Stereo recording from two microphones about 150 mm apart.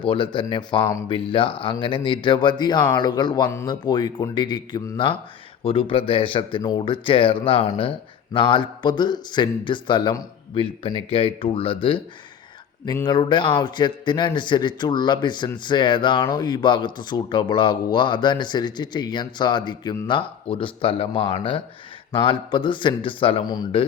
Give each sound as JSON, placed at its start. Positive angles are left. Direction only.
{"t": 0.1, "sound": "a man's voice", "side_deg": 35}
{"t": 13.1, "sound": "a man's voice", "side_deg": 30}